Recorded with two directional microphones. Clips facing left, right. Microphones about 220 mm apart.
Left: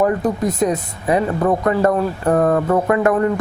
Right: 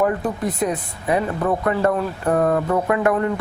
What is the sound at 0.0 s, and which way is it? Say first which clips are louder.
Speech: left 3 dB; 40° left (ahead or behind).